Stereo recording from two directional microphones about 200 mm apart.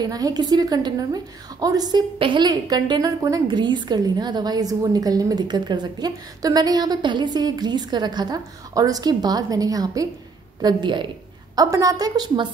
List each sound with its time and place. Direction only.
0.0 s a woman's voice: 20° right (ahead or behind)